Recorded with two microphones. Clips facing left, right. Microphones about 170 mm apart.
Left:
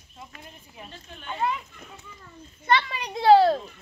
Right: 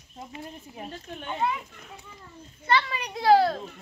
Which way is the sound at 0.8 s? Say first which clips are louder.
Right 5 dB; 40° right (ahead or behind).